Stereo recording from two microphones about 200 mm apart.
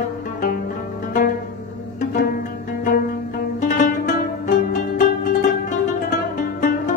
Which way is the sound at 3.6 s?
40° left (ahead or behind).